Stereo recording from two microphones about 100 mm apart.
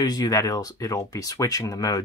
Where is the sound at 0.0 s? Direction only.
40° left (ahead or behind).